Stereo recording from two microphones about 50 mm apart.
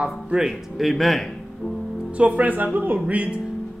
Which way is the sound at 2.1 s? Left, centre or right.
Right.